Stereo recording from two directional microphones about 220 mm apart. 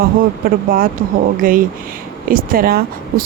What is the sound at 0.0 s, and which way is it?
Speech, 40° right (ahead or behind).